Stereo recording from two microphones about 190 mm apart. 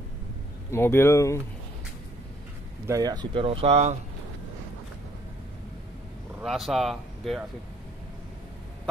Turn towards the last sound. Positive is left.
turn(degrees=0)  # may be behind; listen again after turning